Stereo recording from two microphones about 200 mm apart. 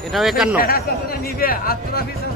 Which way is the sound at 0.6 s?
50° left (ahead or behind).